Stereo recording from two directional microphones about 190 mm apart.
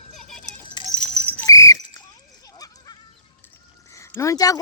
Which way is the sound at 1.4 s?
20° left (ahead or behind).